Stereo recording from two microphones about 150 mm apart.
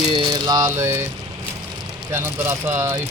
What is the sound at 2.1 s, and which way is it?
Speech, 15° right (ahead or behind).